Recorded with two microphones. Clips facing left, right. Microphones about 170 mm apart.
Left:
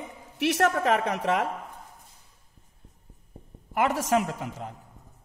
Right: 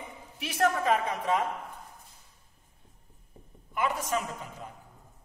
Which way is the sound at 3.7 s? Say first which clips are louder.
Left 6 dB; 75° left (ahead or behind).